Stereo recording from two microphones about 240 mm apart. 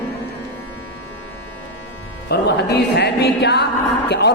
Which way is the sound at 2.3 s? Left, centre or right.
Left.